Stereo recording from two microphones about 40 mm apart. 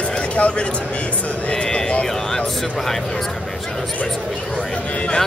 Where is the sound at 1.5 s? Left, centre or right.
Left.